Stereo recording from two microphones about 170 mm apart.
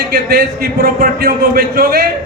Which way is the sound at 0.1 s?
65° right (ahead or behind).